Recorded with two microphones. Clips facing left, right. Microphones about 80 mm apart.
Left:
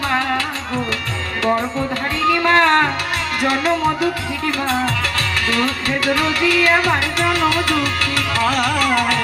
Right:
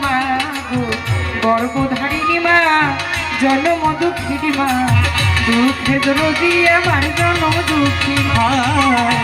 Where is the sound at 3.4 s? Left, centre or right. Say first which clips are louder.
Right 4 dB; centre.